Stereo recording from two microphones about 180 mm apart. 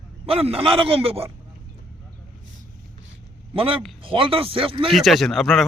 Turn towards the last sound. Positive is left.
turn(degrees=0)  # may be behind; listen again after turning